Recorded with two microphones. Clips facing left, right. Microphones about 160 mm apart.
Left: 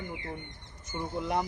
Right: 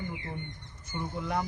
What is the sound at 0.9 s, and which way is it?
Speech, 20° left (ahead or behind).